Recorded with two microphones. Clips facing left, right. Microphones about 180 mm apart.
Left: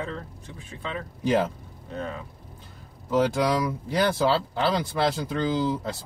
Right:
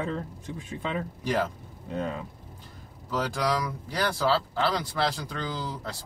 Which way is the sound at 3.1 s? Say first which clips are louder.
Left 5 dB; 25° left (ahead or behind).